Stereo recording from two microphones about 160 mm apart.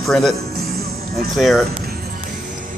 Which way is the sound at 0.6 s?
75° right (ahead or behind).